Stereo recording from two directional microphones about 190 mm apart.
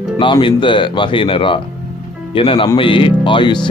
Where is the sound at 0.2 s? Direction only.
25° left (ahead or behind).